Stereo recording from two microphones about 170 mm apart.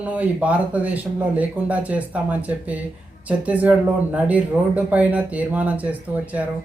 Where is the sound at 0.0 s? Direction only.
10° right (ahead or behind).